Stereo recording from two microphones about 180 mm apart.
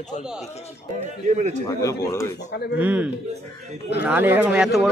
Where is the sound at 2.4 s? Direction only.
70° left (ahead or behind).